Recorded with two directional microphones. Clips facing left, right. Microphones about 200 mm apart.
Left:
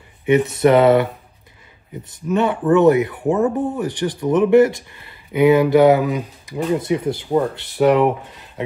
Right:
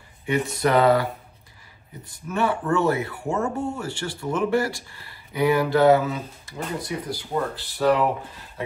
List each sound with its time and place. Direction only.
0.2 s speech: 20° left (ahead or behind)
2.3 s speech: 20° left (ahead or behind)